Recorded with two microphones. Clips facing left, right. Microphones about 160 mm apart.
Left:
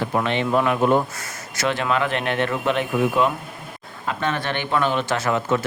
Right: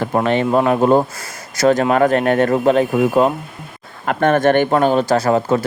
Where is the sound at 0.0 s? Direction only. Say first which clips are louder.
Right 6 dB; 45° right (ahead or behind).